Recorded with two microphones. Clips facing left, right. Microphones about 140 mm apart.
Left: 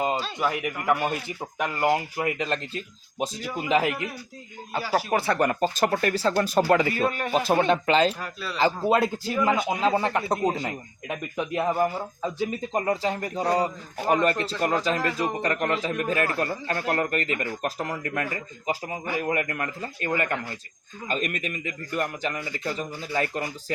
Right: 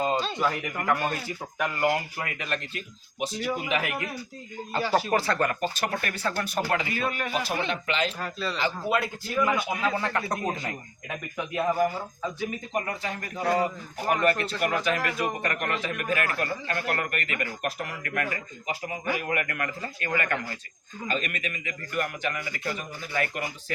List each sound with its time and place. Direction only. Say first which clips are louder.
0.0 s a man's voice: even; 10° left (ahead or behind); by 3.9 s 35° left (ahead or behind)
4.7 s a man's voice: even; 10° left (ahead or behind); by 8.1 s 40° left (ahead or behind)
8.2 s speech: right 3 dB; 5° left (ahead or behind)
8.6 s a man's voice: left 7 dB; 35° left (ahead or behind)
12.7 s a man's voice: left 8 dB; 30° left (ahead or behind)
21.1 s a man's voice: left 2 dB; 40° left (ahead or behind)